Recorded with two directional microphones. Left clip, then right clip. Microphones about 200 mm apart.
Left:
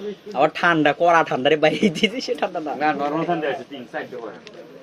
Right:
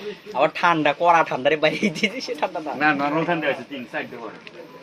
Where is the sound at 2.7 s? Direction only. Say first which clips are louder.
Right 2 dB; 45° right (ahead or behind).